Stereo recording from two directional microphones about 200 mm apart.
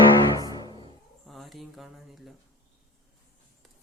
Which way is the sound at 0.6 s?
20° left (ahead or behind).